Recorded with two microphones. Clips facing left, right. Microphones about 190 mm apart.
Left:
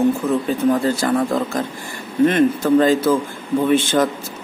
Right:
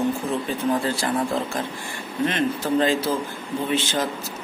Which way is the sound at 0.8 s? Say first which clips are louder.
Left 6 dB; 45° left (ahead or behind).